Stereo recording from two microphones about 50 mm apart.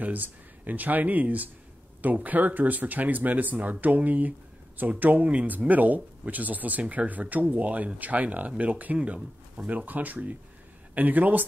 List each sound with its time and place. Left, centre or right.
0.0 s speech: right